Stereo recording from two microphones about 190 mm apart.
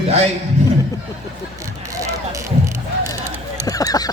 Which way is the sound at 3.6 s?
20° left (ahead or behind).